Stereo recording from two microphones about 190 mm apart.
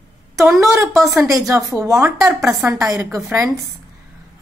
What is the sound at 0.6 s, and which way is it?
Speech, 15° right (ahead or behind).